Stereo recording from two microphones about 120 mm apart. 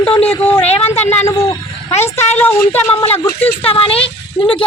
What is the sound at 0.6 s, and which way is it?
Speech, 60° left (ahead or behind).